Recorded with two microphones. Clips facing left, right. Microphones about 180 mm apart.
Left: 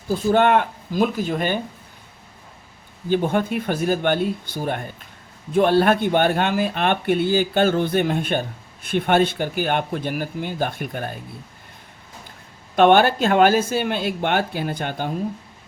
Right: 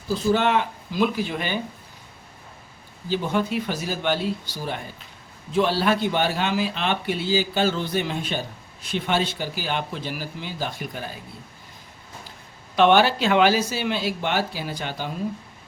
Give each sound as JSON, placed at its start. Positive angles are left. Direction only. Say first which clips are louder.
{"t": 0.1, "sound": "speech", "louder": "left 4 dB", "side_deg": 55}
{"t": 3.1, "sound": "speech", "louder": "left 4 dB", "side_deg": 55}
{"t": 12.7, "sound": "speech", "louder": "left 3 dB", "side_deg": 50}